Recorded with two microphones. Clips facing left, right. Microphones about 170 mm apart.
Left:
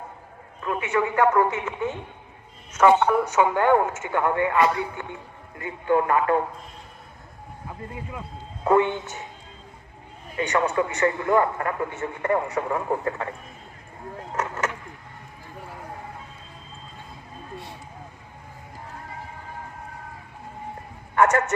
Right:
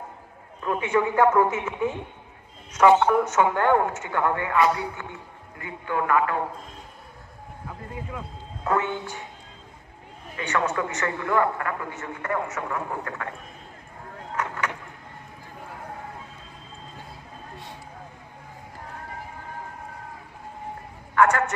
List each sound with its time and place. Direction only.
0.6 s a man's voice: 15° right (ahead or behind)
3.2 s a man's voice: 10° left (ahead or behind); by 6.3 s 30° left (ahead or behind)
8.6 s a man's voice: 25° left (ahead or behind)
10.3 s a man's voice: 20° left (ahead or behind)
14.3 s vehicle: 45° left (ahead or behind)
21.2 s a man's voice: 25° left (ahead or behind)